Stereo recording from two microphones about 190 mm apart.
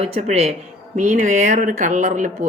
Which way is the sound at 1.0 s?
45° right (ahead or behind).